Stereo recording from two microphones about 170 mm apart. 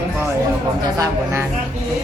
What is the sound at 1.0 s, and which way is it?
Speech, 15° right (ahead or behind).